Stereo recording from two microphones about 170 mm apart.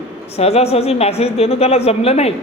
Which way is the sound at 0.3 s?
35° left (ahead or behind).